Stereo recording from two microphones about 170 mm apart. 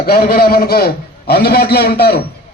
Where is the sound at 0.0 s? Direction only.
60° left (ahead or behind).